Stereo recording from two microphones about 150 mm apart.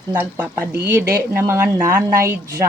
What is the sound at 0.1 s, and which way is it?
Speech, 10° right (ahead or behind).